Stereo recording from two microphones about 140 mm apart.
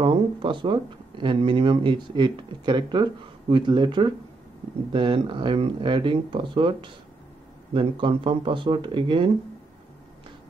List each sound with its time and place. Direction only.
0.0 s speech: 35° right (ahead or behind)